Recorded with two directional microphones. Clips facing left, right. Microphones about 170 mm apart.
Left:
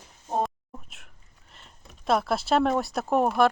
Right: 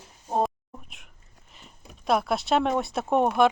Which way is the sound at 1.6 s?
Centre (ahead or behind).